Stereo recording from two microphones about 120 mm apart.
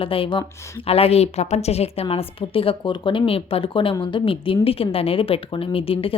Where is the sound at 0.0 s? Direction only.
50° left (ahead or behind).